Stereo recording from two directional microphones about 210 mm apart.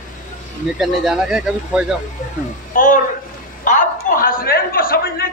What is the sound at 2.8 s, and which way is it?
A man's voice, 40° left (ahead or behind).